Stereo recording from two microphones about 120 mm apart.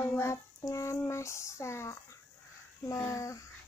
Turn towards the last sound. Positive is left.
turn(degrees=25)  # may be behind; listen again after turning